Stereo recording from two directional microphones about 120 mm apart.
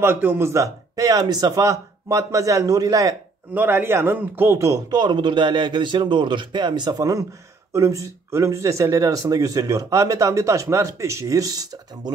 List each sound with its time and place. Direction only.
0.0 s speech: 20° right (ahead or behind)
3.5 s speech: 15° right (ahead or behind)
4.9 s speech: 40° right (ahead or behind)